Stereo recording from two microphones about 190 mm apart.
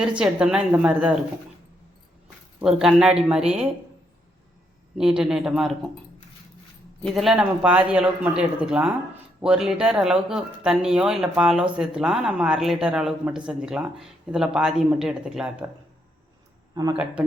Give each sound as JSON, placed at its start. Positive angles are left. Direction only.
{"t": 0.2, "sound": "speech", "side_deg": -5}
{"t": 2.6, "sound": "speech", "side_deg": 0}
{"t": 4.9, "sound": "speech", "side_deg": -5}
{"t": 7.0, "sound": "speech", "side_deg": 0}
{"t": 16.8, "sound": "speech", "side_deg": -15}